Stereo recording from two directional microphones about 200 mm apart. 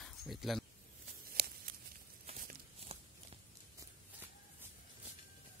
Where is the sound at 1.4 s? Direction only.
50° right (ahead or behind).